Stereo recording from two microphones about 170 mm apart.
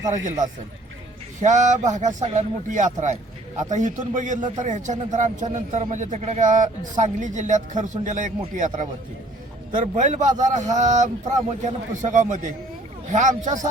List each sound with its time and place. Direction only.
1.4 s a man's voice: 45° right (ahead or behind)